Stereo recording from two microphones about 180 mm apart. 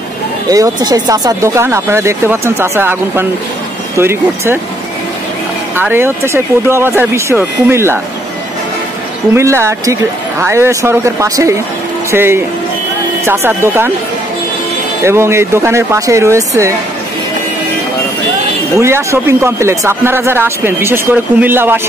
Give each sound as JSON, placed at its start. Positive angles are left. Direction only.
{"t": 0.5, "sound": "speech", "side_deg": -20}
{"t": 5.8, "sound": "speech", "side_deg": -10}
{"t": 9.3, "sound": "speech", "side_deg": -15}
{"t": 15.0, "sound": "speech", "side_deg": -15}
{"t": 18.8, "sound": "speech", "side_deg": -15}